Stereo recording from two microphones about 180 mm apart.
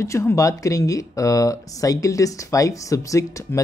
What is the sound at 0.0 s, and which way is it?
Speech, 15° left (ahead or behind).